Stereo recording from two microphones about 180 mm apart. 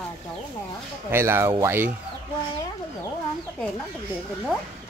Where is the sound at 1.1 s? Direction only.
15° right (ahead or behind).